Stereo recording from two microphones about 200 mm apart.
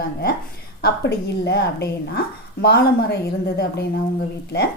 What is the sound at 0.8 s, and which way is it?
A woman's voice, 55° left (ahead or behind).